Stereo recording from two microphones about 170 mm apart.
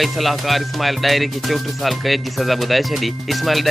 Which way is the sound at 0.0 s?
Centre (ahead or behind).